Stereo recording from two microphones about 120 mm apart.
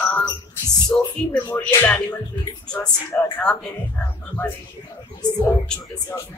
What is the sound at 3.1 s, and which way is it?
Speech, 15° left (ahead or behind).